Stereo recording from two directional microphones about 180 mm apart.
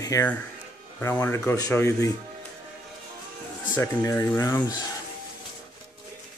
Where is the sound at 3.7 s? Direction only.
15° left (ahead or behind).